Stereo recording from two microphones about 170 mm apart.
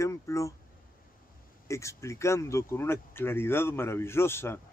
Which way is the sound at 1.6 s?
15° left (ahead or behind).